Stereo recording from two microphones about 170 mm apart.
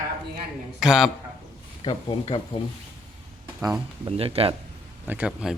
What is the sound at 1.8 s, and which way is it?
Speech, 30° left (ahead or behind).